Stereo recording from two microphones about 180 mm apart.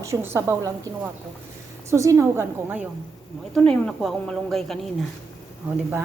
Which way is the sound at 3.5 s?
5° left (ahead or behind).